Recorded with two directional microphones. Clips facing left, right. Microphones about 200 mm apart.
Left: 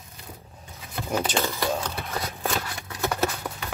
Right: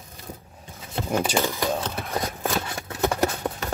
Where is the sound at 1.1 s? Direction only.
15° right (ahead or behind).